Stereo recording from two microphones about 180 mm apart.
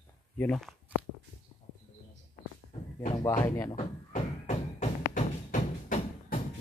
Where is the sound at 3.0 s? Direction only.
25° left (ahead or behind).